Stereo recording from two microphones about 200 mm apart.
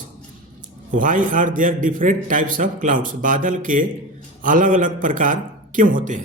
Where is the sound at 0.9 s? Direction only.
40° right (ahead or behind).